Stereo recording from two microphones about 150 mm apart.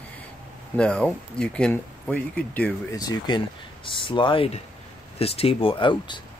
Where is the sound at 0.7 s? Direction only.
5° left (ahead or behind).